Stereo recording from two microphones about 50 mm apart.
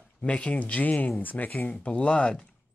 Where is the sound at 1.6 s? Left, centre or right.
Left.